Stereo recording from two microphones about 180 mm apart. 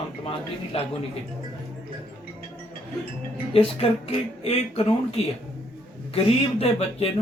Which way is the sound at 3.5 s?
30° left (ahead or behind).